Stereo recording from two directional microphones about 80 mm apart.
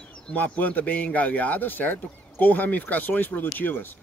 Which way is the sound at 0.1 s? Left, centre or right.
Centre.